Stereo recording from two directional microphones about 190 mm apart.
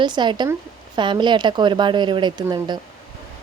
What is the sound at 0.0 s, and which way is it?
Speech, 25° right (ahead or behind).